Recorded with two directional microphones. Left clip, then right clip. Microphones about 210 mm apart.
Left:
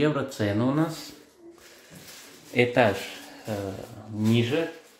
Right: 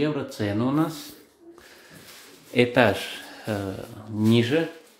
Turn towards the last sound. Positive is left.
turn(degrees=-35)  # may be behind; listen again after turning